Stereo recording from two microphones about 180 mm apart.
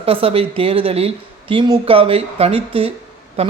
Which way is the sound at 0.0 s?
30° right (ahead or behind).